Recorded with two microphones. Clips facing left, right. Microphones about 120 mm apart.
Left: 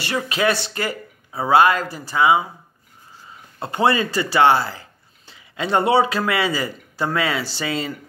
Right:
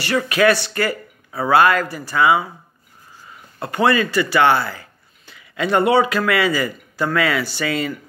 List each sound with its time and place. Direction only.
0.0 s speech: 25° left (ahead or behind)
3.5 s speech: 25° left (ahead or behind)